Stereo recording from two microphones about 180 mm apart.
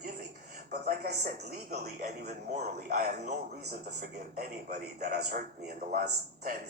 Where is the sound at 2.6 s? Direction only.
50° right (ahead or behind).